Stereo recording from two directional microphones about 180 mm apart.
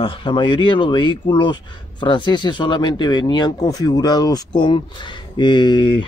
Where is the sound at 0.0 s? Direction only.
25° left (ahead or behind).